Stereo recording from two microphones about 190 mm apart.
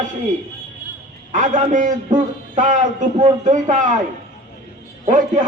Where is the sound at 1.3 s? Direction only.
40° right (ahead or behind).